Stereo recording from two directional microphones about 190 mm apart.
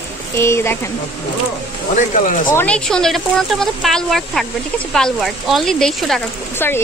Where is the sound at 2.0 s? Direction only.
40° left (ahead or behind).